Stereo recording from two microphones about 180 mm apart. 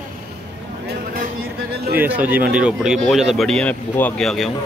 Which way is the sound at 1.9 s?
10° right (ahead or behind).